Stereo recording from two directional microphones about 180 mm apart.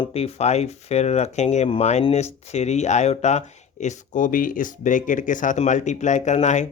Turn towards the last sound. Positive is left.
turn(degrees=40)  # may be behind; listen again after turning